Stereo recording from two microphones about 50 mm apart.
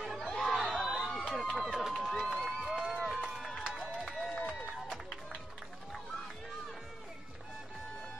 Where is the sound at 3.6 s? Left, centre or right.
Centre.